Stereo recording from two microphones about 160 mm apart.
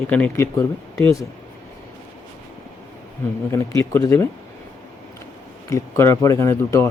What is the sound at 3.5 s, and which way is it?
Speech, 15° left (ahead or behind).